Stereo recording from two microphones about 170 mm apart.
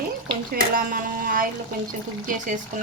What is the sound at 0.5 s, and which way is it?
Speech, 55° right (ahead or behind).